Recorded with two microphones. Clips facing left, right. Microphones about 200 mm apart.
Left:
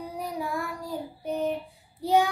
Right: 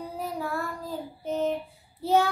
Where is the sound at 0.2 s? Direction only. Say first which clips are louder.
Even; 15° left (ahead or behind).